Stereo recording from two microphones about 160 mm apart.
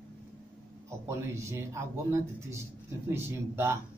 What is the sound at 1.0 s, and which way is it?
Speech, 20° right (ahead or behind).